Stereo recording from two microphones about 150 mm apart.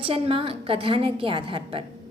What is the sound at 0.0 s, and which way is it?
A woman's voice, 40° right (ahead or behind).